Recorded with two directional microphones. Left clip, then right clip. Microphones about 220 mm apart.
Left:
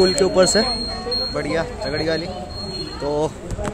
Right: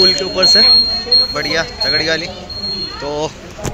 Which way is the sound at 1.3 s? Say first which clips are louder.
Right 5 dB; 10° left (ahead or behind).